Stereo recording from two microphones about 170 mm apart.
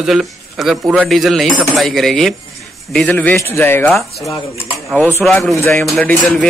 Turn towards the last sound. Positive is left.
turn(degrees=5)  # may be behind; listen again after turning